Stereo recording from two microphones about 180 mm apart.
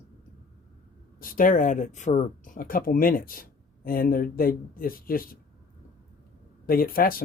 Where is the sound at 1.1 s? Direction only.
50° left (ahead or behind).